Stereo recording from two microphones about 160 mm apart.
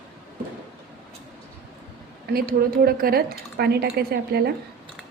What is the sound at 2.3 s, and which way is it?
Speech, 65° right (ahead or behind).